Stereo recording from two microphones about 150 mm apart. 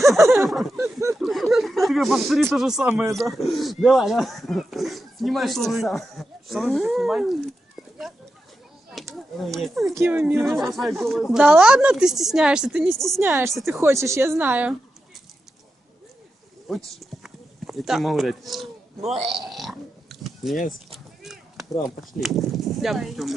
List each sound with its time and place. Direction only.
0.2 s speech: 15° right (ahead or behind)
0.4 s speech: centre (ahead or behind)
2.9 s speech: 20° right (ahead or behind)
3.2 s speech: centre (ahead or behind)
9.6 s speech: centre (ahead or behind)
9.9 s speech: 15° right (ahead or behind)
13.1 s speech: 15° right (ahead or behind)
16.6 s speech: centre (ahead or behind)
19.4 s a sound: centre (ahead or behind)
21.2 s chop: centre (ahead or behind)
21.8 s speech: centre (ahead or behind)